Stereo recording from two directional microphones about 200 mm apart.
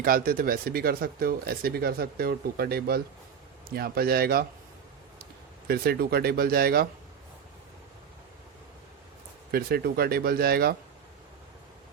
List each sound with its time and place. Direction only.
0.0 s speech: 45° right (ahead or behind)
5.6 s speech: 50° right (ahead or behind)
9.5 s speech: 50° right (ahead or behind)